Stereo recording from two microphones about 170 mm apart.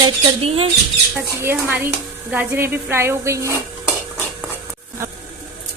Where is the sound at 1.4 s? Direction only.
10° right (ahead or behind).